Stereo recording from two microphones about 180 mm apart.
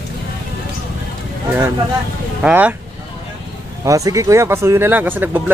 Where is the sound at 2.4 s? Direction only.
5° right (ahead or behind).